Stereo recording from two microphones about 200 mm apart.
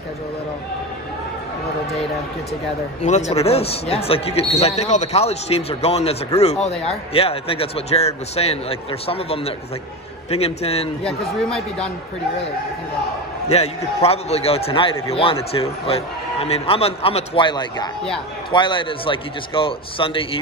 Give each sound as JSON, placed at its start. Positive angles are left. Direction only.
{"t": 3.0, "sound": "speech", "side_deg": 35}
{"t": 11.1, "sound": "speech", "side_deg": 0}
{"t": 13.5, "sound": "a man's voice", "side_deg": 30}